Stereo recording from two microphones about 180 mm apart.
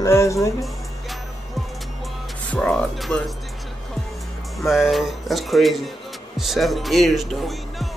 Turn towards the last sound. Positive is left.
turn(degrees=0)  # may be behind; listen again after turning